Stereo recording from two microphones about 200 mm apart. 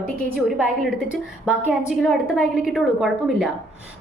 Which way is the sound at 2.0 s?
Centre (ahead or behind).